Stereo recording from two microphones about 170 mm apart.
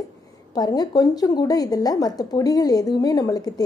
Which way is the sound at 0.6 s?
20° left (ahead or behind).